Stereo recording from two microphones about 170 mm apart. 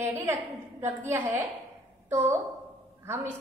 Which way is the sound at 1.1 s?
10° right (ahead or behind).